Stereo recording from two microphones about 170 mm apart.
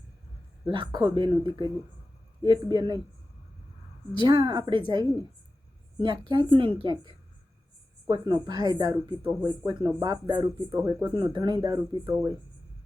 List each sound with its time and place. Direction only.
0.6 s speech: 25° right (ahead or behind)
4.2 s speech: 30° right (ahead or behind)
8.0 s speech: 25° right (ahead or behind)